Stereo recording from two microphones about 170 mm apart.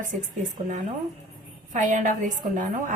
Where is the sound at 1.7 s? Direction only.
45° right (ahead or behind).